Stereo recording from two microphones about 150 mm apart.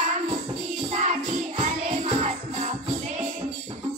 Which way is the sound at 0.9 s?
50° right (ahead or behind).